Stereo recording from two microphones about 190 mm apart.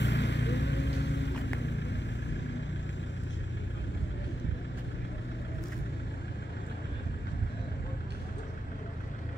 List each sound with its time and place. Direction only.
0.0 s vehicle: 70° left (ahead or behind)